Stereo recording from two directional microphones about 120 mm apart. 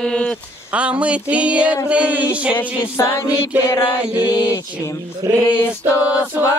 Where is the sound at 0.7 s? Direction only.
10° right (ahead or behind).